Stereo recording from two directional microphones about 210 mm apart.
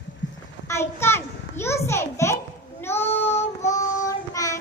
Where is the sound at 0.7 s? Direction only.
10° left (ahead or behind).